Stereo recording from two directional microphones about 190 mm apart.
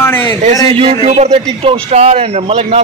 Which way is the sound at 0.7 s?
35° right (ahead or behind).